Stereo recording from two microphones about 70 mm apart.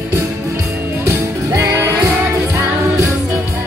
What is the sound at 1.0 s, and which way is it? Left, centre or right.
Music, right.